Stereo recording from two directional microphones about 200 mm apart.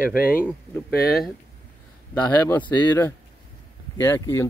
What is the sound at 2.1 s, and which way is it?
Speech, 10° left (ahead or behind).